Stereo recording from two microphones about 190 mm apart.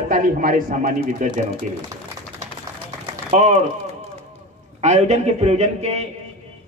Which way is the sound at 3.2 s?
35° right (ahead or behind).